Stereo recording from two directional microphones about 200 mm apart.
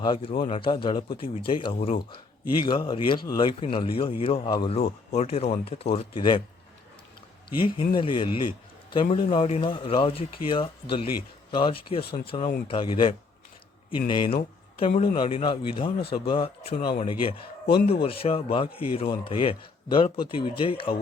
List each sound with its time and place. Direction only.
0.0 s speech: 25° left (ahead or behind)
7.9 s speech: 25° left (ahead or behind)